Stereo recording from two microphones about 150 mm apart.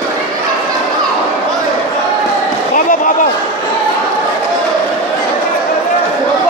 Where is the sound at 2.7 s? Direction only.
65° left (ahead or behind).